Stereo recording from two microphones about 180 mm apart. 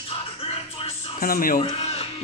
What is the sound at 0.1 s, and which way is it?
Music, 30° left (ahead or behind).